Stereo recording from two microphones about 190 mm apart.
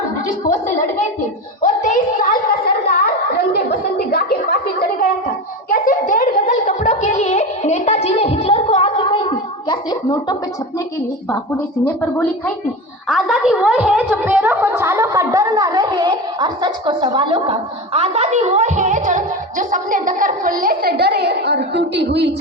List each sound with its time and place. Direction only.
0.4 s gargling: 45° left (ahead or behind)
1.6 s a sound: 40° left (ahead or behind); by 10.3 s 25° left (ahead or behind)
12.1 s a woman's voice: 5° left (ahead or behind); by 22.3 s 65° right (ahead or behind)